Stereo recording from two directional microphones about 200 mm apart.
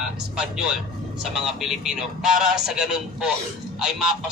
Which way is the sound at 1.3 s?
Centre (ahead or behind).